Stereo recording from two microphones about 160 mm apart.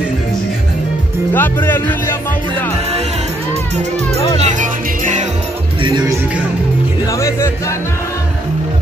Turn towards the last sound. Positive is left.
turn(degrees=15)  # may be behind; listen again after turning